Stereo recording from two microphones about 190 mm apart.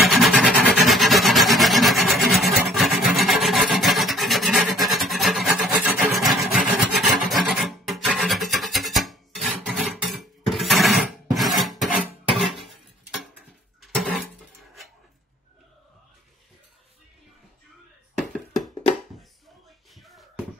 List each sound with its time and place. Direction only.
0.1 s filing: centre (ahead or behind)
12.4 s a sound: centre (ahead or behind)
18.3 s music: centre (ahead or behind)